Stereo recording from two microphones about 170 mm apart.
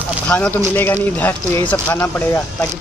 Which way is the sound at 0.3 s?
5° left (ahead or behind).